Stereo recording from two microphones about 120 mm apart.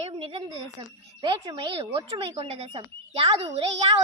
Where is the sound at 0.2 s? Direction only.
50° right (ahead or behind).